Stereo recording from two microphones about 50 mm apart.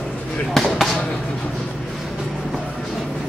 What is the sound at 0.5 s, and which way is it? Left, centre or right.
Basketball bounce, centre.